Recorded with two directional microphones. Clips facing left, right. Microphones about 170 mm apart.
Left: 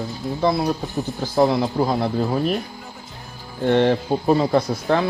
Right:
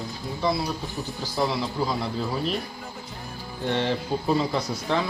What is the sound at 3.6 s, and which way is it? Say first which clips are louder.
Speech: left 8 dB; 60° left (ahead or behind).